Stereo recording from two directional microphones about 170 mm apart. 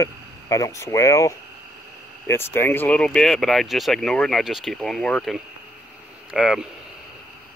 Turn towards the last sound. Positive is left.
turn(degrees=-5)  # may be behind; listen again after turning